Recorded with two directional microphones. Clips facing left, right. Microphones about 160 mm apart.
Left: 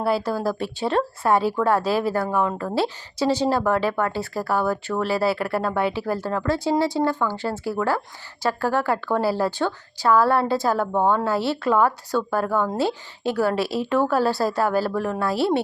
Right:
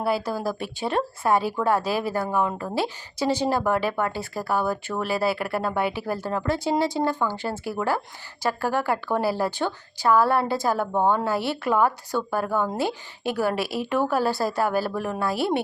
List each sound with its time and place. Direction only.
0.0 s speech: 15° right (ahead or behind)